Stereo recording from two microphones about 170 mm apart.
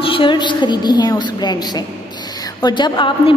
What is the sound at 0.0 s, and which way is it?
A woman's voice, 30° left (ahead or behind).